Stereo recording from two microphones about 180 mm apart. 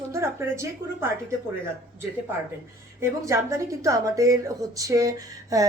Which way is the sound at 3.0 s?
15° right (ahead or behind).